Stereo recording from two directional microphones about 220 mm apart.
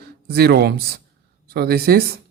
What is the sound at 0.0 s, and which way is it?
A man's voice, 45° right (ahead or behind).